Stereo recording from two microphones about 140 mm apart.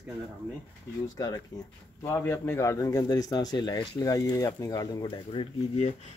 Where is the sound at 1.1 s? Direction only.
25° left (ahead or behind).